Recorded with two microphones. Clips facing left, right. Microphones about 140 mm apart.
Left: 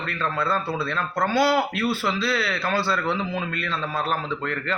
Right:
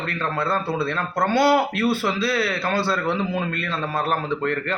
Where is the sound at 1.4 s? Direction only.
55° right (ahead or behind).